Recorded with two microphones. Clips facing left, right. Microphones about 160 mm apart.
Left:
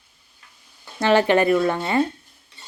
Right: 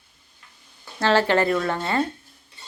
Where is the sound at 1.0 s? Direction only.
15° left (ahead or behind).